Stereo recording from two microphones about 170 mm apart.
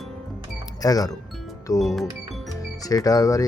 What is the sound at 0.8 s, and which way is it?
Speech, 20° left (ahead or behind).